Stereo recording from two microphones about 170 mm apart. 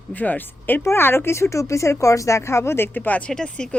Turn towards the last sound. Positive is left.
turn(degrees=5)  # may be behind; listen again after turning